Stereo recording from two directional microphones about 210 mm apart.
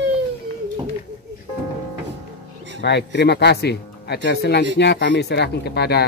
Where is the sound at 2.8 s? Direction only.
55° left (ahead or behind).